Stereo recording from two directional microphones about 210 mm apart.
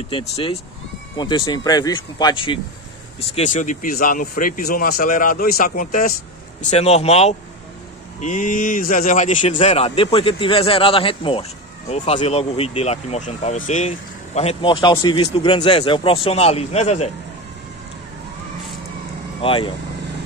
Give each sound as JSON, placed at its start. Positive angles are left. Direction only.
{"t": 0.1, "sound": "speech", "side_deg": 25}
{"t": 3.3, "sound": "speech", "side_deg": 35}
{"t": 6.6, "sound": "speech", "side_deg": 30}
{"t": 19.4, "sound": "speech", "side_deg": 25}